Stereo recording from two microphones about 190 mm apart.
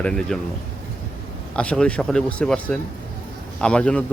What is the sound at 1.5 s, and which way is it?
Speech, 5° left (ahead or behind).